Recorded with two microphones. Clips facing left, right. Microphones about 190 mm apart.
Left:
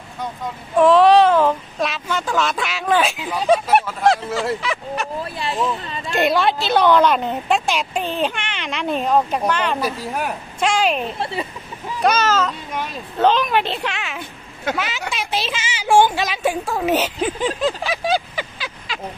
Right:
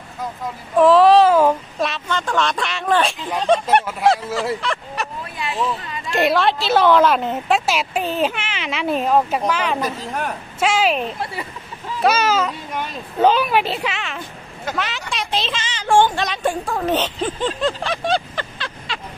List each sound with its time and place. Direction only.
0.2 s speech: centre (ahead or behind)
5.4 s speech: 30° left (ahead or behind)
6.0 s speech: centre (ahead or behind)
9.8 s speech: 10° left (ahead or behind)
10.6 s speech: 5° right (ahead or behind)
11.1 s speech: 25° left (ahead or behind)
12.0 s speech: 10° right (ahead or behind)